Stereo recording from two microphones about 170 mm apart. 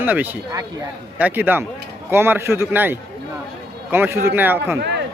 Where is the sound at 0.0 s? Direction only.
10° right (ahead or behind).